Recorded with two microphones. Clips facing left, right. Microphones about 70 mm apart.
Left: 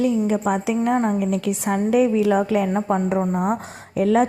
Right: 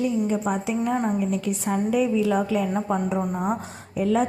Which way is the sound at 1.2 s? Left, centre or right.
Left.